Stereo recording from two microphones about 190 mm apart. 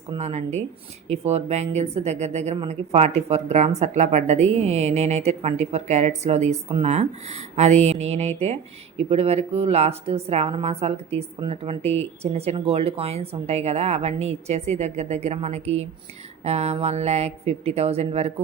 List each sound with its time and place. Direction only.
0.2 s a woman's voice: 35° right (ahead or behind)